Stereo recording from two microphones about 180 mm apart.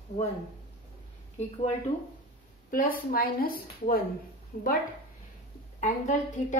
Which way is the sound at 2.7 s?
50° left (ahead or behind).